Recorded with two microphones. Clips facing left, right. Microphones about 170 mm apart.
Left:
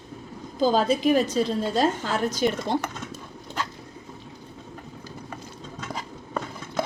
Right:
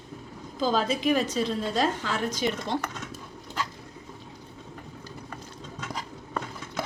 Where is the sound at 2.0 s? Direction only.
40° left (ahead or behind).